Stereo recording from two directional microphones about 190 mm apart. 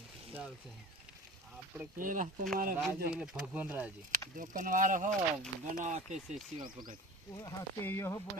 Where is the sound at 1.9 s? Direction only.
45° right (ahead or behind).